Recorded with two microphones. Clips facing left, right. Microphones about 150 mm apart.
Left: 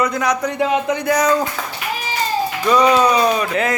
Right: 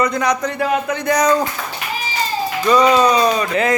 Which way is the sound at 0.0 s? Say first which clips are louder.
Right 1 dB; 5° left (ahead or behind).